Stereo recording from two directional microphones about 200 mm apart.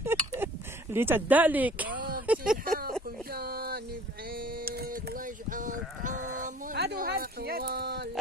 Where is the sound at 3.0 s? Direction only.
50° right (ahead or behind).